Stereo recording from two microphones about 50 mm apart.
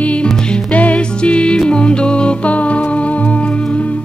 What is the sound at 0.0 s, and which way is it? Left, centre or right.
Music, left.